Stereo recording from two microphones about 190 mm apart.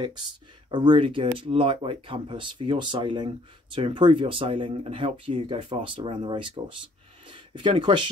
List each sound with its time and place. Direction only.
0.7 s speech: 25° right (ahead or behind)